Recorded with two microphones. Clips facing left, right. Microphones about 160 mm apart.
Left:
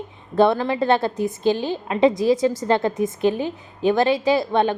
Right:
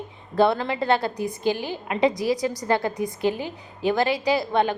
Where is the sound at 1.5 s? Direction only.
15° right (ahead or behind).